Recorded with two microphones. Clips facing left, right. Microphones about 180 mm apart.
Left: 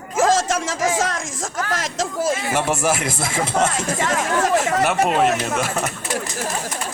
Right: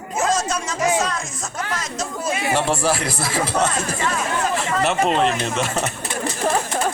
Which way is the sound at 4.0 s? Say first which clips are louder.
Left 3 dB; 80° left.